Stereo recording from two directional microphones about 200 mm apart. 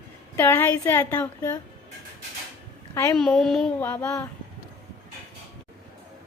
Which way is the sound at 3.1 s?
Centre (ahead or behind).